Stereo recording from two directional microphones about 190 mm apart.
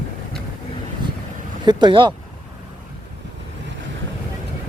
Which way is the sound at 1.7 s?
25° right (ahead or behind).